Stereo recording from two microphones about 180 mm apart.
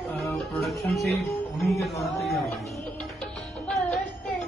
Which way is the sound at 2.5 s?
Centre (ahead or behind).